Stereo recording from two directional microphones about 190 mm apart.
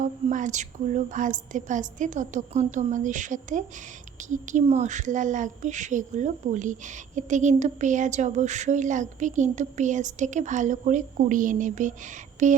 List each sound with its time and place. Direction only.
0.0 s a woman's voice: 40° right (ahead or behind)